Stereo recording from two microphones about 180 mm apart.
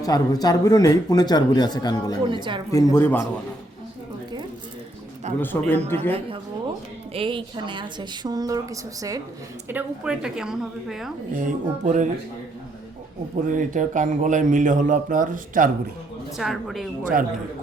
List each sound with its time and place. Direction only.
0.0 s a man's voice: 20° left (ahead or behind)
2.2 s a woman's voice: 25° right (ahead or behind)
2.7 s speech: 15° left (ahead or behind)
5.4 s speech: 10° left (ahead or behind)
7.1 s a woman's voice: 30° right (ahead or behind)
9.6 s a woman's voice: 10° right (ahead or behind)
11.3 s speech: 45° right (ahead or behind)
13.5 s speech: 45° right (ahead or behind)
16.4 s a woman's voice: centre (ahead or behind)
17.0 s speech: 50° right (ahead or behind)